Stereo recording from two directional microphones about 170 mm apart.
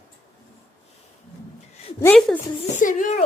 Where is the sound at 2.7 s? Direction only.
50° left (ahead or behind).